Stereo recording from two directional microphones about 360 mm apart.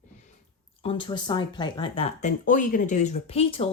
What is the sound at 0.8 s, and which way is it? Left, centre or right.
Speech, centre.